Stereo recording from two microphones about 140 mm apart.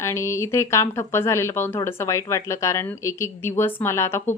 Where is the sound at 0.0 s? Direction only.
20° left (ahead or behind).